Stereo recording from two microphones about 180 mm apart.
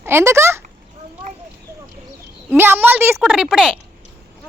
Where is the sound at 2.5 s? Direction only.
10° right (ahead or behind).